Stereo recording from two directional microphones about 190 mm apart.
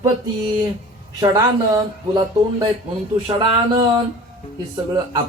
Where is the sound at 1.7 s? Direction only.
20° right (ahead or behind).